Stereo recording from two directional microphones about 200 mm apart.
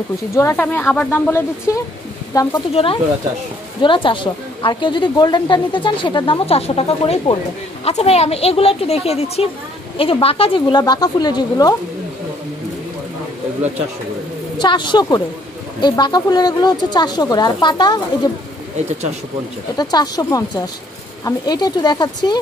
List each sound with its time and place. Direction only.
0.3 s a woman's voice: 15° left (ahead or behind)
14.6 s a woman's voice: 20° left (ahead or behind)
19.8 s a woman's voice: 20° left (ahead or behind)